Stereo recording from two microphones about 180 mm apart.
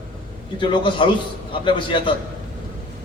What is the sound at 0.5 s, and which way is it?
A man's voice, 30° left (ahead or behind).